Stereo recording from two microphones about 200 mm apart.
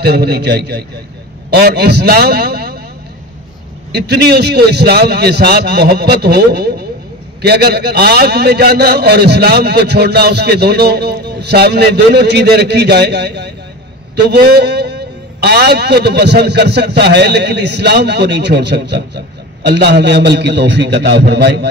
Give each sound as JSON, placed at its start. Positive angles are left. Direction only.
{"t": 0.0, "sound": "a man's voice", "side_deg": -55}
{"t": 3.9, "sound": "a man's voice", "side_deg": -55}